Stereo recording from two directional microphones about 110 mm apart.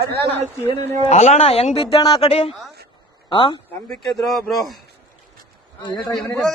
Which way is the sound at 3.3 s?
50° left (ahead or behind).